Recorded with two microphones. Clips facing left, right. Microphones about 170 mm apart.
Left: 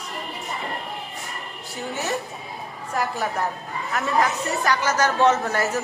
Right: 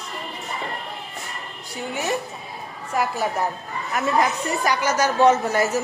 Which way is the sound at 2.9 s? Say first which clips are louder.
Right 2 dB; 10° right (ahead or behind).